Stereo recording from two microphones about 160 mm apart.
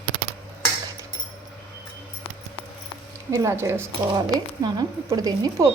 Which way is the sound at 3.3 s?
15° right (ahead or behind).